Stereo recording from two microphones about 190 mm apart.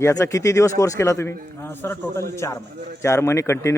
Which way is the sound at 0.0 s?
15° left (ahead or behind).